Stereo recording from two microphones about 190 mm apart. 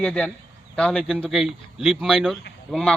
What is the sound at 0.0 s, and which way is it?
Speech, 5° left (ahead or behind).